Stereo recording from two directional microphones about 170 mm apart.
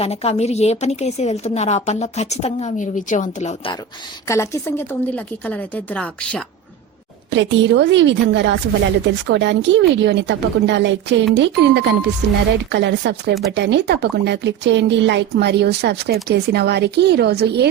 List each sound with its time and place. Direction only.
0.0 s a woman's voice: 35° left (ahead or behind)
4.3 s a woman's voice: 15° left (ahead or behind)
7.3 s speech: 90° right; by 17.7 s 70° right (ahead or behind)